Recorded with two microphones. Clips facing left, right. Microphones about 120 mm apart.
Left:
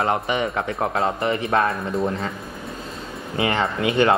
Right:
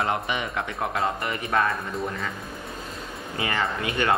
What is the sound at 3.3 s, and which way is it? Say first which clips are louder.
Speech: left 5 dB; 25° left (ahead or behind).